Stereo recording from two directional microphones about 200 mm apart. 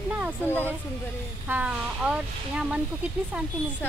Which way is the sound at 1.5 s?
5° right (ahead or behind).